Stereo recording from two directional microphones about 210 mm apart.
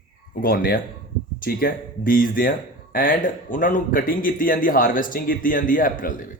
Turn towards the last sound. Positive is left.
turn(degrees=40)  # may be behind; listen again after turning